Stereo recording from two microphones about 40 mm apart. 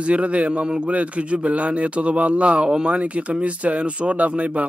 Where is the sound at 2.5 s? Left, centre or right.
Right.